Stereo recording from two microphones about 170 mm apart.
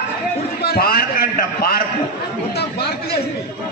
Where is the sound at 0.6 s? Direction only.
65° left (ahead or behind).